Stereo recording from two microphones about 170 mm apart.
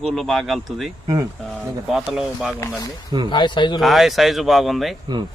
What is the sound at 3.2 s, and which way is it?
Speech, 25° left (ahead or behind).